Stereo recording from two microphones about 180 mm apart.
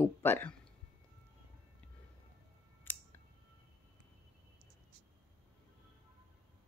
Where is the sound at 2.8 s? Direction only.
10° left (ahead or behind).